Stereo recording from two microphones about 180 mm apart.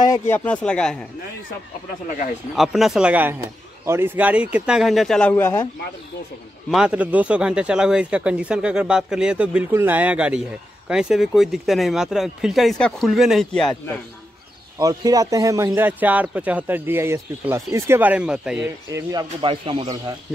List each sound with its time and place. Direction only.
0.0 s speech: 15° left (ahead or behind)
2.5 s speech: centre (ahead or behind)
6.7 s speech: 5° right (ahead or behind)
14.8 s speech: 20° right (ahead or behind); by 18.7 s 5° right (ahead or behind)
18.9 s speech: 15° right (ahead or behind)
19.4 s speech: 30° right (ahead or behind)